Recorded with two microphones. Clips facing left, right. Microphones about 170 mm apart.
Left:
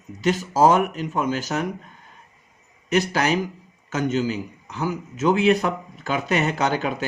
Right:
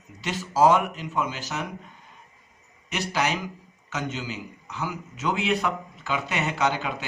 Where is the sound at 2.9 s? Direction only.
45° left (ahead or behind).